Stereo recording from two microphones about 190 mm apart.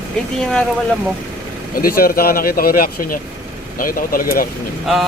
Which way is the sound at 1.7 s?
50° left (ahead or behind).